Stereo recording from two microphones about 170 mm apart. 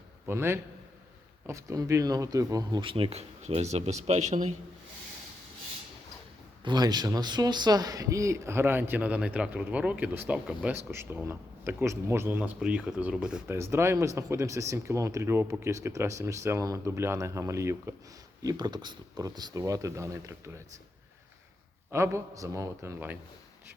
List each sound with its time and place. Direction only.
0.3 s speech: 15° right (ahead or behind); by 4.4 s 45° right (ahead or behind)
6.7 s speech: 25° right (ahead or behind)
21.9 s speech: 15° right (ahead or behind)